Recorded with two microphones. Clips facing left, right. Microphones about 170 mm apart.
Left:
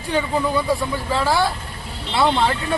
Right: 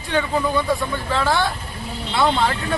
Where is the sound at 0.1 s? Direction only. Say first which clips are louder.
Even; 10° left (ahead or behind).